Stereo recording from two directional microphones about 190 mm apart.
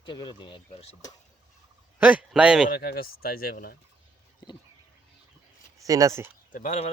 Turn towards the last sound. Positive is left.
turn(degrees=40)  # may be behind; listen again after turning